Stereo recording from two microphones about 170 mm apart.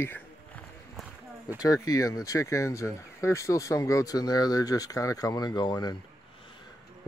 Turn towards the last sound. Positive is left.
turn(degrees=25)  # may be behind; listen again after turning